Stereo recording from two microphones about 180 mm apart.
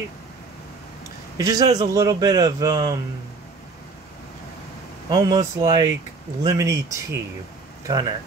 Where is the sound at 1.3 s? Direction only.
20° right (ahead or behind).